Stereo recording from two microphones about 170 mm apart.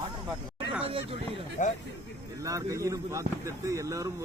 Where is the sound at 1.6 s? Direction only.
50° left (ahead or behind).